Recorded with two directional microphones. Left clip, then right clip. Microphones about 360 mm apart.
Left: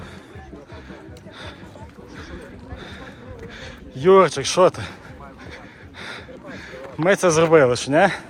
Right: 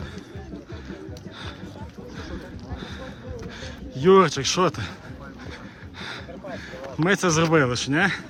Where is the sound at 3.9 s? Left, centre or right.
Centre.